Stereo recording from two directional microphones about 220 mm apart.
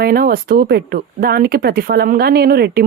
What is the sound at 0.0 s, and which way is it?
Speech, 45° right (ahead or behind).